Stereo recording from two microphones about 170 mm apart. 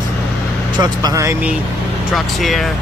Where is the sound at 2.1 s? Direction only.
Centre (ahead or behind).